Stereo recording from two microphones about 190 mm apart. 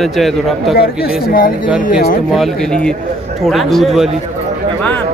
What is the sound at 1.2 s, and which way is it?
Speech, 50° left (ahead or behind).